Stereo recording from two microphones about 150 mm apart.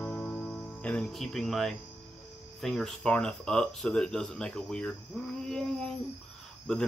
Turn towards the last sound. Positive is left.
turn(degrees=5)  # may be behind; listen again after turning